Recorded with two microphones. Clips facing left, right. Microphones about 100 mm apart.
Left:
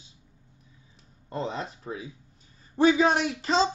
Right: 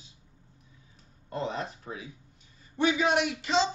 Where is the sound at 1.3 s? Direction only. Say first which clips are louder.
Left 1 dB; 30° left (ahead or behind).